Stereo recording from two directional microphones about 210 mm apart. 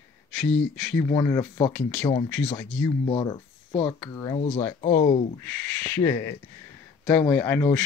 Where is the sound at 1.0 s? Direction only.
15° left (ahead or behind).